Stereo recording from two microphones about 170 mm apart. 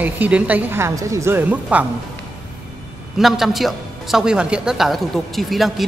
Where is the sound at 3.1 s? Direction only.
Centre (ahead or behind).